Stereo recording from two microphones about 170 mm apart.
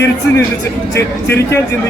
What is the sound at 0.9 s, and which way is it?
Speech, 75° left (ahead or behind).